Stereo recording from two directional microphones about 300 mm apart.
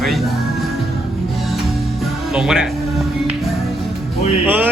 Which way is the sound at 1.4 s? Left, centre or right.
Centre.